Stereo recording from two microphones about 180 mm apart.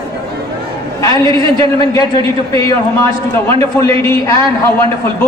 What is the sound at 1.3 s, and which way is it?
Speech, 30° right (ahead or behind).